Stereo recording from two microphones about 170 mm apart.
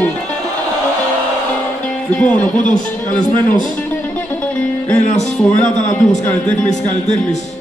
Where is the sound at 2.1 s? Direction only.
10° left (ahead or behind).